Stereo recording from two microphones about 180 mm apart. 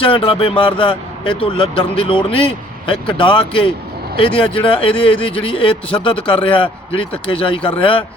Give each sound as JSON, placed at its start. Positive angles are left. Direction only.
{"t": 0.0, "sound": "a man's voice", "side_deg": 30}